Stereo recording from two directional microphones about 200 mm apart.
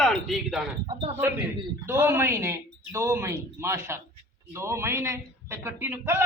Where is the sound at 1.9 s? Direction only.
10° right (ahead or behind).